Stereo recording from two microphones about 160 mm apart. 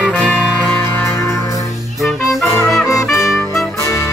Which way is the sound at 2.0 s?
Centre (ahead or behind).